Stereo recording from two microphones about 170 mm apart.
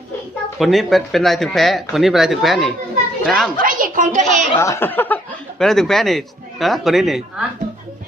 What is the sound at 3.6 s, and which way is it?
Speech, 55° right (ahead or behind).